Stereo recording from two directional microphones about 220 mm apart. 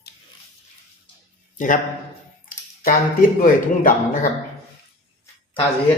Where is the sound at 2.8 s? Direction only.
40° left (ahead or behind).